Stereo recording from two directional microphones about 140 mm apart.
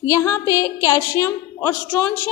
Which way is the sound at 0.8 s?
20° left (ahead or behind).